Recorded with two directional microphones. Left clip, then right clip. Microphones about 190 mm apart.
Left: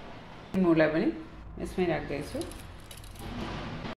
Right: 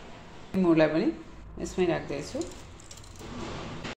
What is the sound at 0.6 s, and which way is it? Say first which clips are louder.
Speech: right 1 dB; 10° right (ahead or behind).